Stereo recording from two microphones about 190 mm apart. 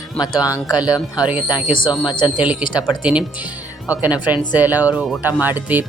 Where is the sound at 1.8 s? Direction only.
25° left (ahead or behind).